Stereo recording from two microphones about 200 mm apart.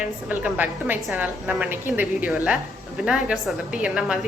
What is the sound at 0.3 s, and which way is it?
A woman's voice, 10° right (ahead or behind).